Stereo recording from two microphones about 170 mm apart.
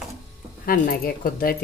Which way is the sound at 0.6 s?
60° left (ahead or behind).